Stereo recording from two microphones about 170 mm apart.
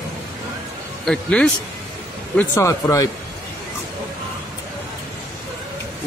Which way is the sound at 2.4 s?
15° left (ahead or behind).